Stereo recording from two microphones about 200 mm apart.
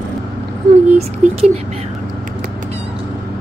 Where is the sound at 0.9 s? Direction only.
30° right (ahead or behind).